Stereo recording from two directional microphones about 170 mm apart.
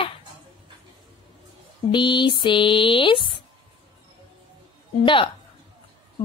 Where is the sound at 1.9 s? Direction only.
25° left (ahead or behind).